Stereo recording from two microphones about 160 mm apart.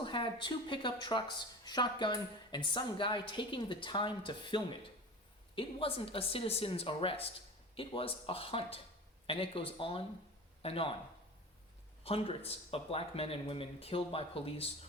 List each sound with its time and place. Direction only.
0.0 s speech: 30° left (ahead or behind)
12.0 s speech: 40° left (ahead or behind)